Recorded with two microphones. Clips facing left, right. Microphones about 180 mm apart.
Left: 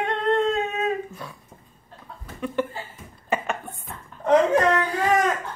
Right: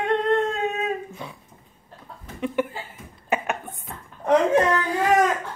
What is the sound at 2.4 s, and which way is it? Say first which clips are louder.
Speech: right 2 dB; 20° right (ahead or behind).